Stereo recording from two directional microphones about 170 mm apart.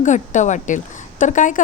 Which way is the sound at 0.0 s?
45° left (ahead or behind).